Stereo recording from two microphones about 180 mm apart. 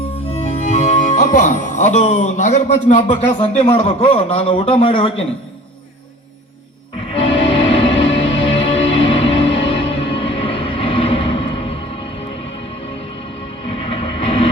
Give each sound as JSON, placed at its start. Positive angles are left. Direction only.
{"t": 0.0, "sound": "music", "side_deg": 35}
{"t": 3.6, "sound": "a man's voice", "side_deg": 30}
{"t": 7.1, "sound": "music", "side_deg": 30}
{"t": 13.7, "sound": "vehicle", "side_deg": 30}